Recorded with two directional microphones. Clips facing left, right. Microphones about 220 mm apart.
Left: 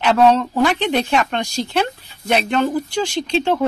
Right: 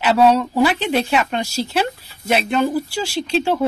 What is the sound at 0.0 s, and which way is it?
Speech, 10° right (ahead or behind).